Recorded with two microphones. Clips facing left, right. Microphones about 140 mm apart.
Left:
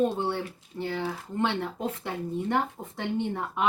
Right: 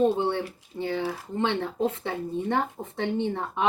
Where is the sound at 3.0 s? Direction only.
20° right (ahead or behind).